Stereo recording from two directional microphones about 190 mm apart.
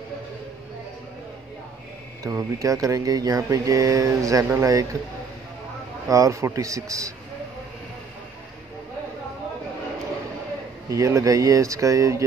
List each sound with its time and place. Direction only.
2.2 s speech: 15° right (ahead or behind)
6.0 s speech: 15° right (ahead or behind)
10.9 s speech: 15° right (ahead or behind)